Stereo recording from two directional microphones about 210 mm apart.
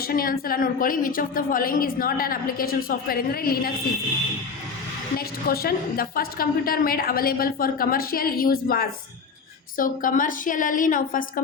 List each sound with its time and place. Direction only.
0.0 s a woman's voice: 45° left (ahead or behind)
5.1 s a woman's voice: 45° left (ahead or behind)